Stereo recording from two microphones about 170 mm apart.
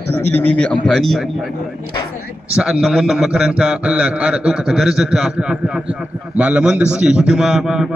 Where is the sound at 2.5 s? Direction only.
5° right (ahead or behind).